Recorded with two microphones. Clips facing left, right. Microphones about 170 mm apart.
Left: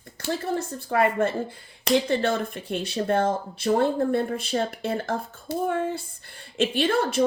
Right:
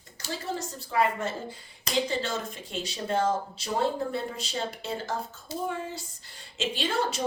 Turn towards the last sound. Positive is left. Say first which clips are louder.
# left 6 dB
turn(degrees=55)  # may be behind; listen again after turning